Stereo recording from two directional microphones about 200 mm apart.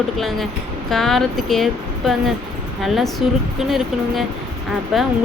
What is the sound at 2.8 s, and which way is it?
Speech, centre (ahead or behind).